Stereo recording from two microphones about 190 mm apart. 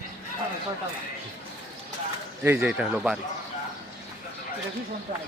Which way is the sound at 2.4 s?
10° right (ahead or behind).